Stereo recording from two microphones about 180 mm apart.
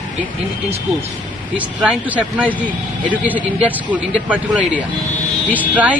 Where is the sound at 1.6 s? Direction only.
5° right (ahead or behind).